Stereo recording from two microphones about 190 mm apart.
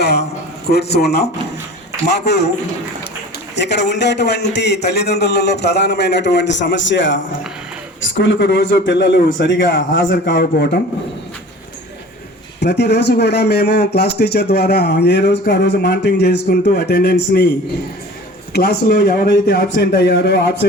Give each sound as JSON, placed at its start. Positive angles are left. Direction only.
{"t": 0.0, "sound": "a man's voice", "side_deg": 60}
{"t": 3.5, "sound": "a man's voice", "side_deg": 65}
{"t": 8.2, "sound": "a man's voice", "side_deg": 65}
{"t": 12.5, "sound": "a man's voice", "side_deg": 65}
{"t": 18.5, "sound": "a man's voice", "side_deg": 60}